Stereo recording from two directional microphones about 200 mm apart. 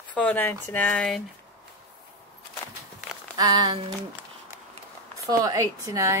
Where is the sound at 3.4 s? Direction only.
20° right (ahead or behind).